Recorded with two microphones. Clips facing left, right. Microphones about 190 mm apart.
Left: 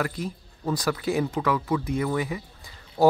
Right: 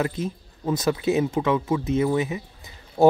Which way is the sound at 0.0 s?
20° right (ahead or behind).